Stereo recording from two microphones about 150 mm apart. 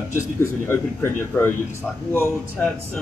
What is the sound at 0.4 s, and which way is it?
Speech, 15° left (ahead or behind).